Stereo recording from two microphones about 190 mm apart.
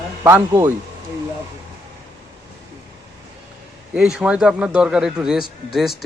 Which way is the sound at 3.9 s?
5° right (ahead or behind).